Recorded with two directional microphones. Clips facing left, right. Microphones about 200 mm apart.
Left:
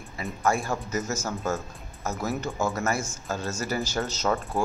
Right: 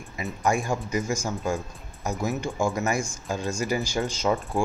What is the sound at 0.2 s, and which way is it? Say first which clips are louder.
Speech: right 1 dB; 15° right (ahead or behind).